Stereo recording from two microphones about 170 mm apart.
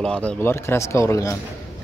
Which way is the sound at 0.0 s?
5° left (ahead or behind).